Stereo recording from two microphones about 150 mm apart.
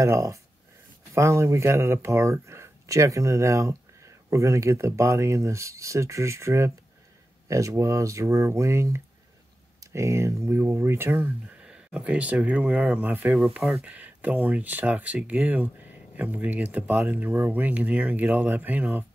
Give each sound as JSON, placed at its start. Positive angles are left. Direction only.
{"t": 0.0, "sound": "speech", "side_deg": -20}